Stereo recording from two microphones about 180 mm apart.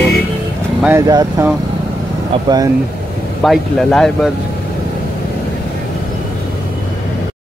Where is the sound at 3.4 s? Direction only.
Centre (ahead or behind).